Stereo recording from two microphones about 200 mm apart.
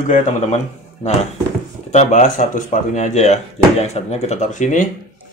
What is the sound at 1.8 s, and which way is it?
Speech, 35° left (ahead or behind).